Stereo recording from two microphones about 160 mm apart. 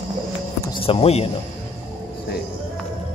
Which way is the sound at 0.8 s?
40° left (ahead or behind).